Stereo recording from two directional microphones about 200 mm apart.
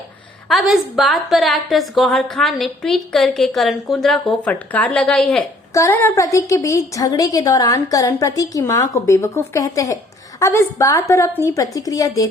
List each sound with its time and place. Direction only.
0.4 s a woman's voice: centre (ahead or behind); by 12.3 s 15° left (ahead or behind)